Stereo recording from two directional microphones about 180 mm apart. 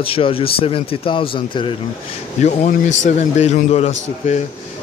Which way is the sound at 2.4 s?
40° left (ahead or behind).